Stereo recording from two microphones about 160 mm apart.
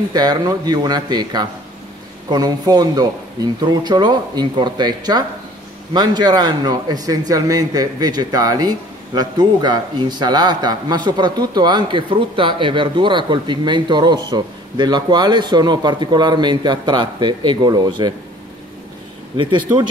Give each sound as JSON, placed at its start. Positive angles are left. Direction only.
{"t": 0.1, "sound": "a man's voice", "side_deg": -25}
{"t": 19.3, "sound": "a man's voice", "side_deg": -30}